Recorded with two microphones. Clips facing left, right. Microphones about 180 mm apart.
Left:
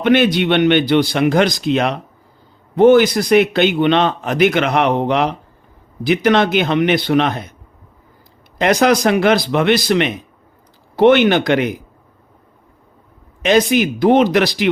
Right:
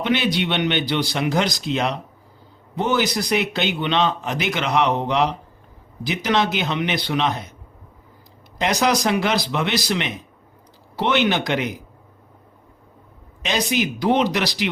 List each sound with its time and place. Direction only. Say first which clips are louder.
0.0 s speech: left 8 dB; 55° left (ahead or behind)
8.5 s speech: left 7 dB; 55° left (ahead or behind)
13.4 s speech: left 9 dB; 55° left (ahead or behind)